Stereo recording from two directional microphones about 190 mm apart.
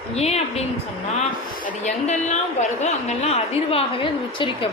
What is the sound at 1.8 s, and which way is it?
A woman's voice, 35° left (ahead or behind).